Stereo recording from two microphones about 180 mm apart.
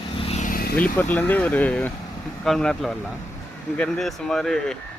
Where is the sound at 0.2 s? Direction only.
35° left (ahead or behind); by 0.8 s 55° left (ahead or behind).